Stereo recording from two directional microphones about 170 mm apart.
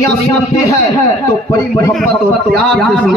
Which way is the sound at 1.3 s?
20° left (ahead or behind).